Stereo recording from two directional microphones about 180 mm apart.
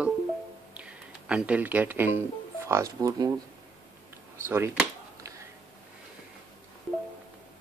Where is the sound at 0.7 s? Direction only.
5° right (ahead or behind).